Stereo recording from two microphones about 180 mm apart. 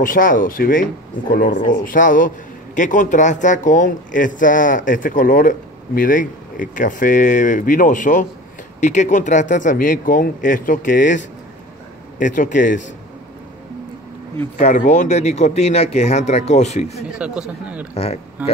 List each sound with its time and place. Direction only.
0.0 s a man's voice: 50° left (ahead or behind)
14.6 s speech: 40° left (ahead or behind)
17.2 s speech: 5° right (ahead or behind)
17.9 s speech: 35° left (ahead or behind)